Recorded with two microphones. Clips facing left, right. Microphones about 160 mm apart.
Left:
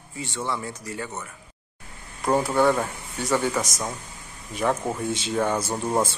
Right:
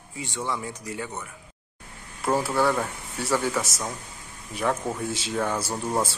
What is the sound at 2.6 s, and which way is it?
Speech, 15° left (ahead or behind).